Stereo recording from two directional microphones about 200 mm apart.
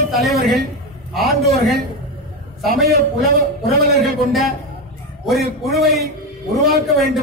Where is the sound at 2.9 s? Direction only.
45° right (ahead or behind).